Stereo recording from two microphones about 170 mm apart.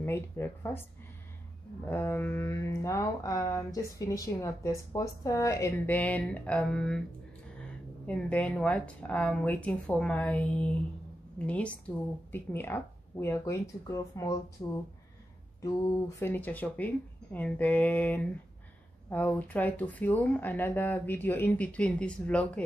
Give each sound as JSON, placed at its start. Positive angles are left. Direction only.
{"t": 0.0, "sound": "speech", "side_deg": 15}
{"t": 1.9, "sound": "speech", "side_deg": 15}
{"t": 8.1, "sound": "speech", "side_deg": 5}
{"t": 16.2, "sound": "speech", "side_deg": 10}